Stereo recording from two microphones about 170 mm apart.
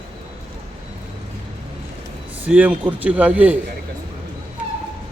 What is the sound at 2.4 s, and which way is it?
Speech, 10° right (ahead or behind).